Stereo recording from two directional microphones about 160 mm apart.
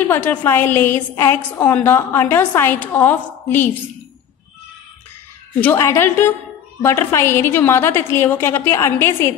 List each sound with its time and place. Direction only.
0.1 s a woman's voice: 10° left (ahead or behind)
5.6 s a woman's voice: 15° left (ahead or behind)